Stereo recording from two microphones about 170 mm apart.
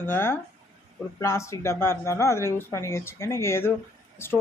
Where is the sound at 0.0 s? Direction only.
15° left (ahead or behind).